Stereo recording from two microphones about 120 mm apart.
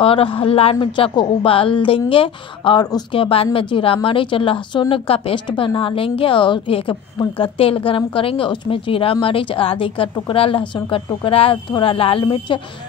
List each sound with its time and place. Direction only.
0.0 s a woman's voice: 50° left (ahead or behind)